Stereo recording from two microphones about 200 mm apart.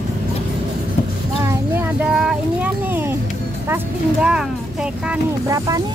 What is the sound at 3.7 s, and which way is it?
Speech, 5° right (ahead or behind).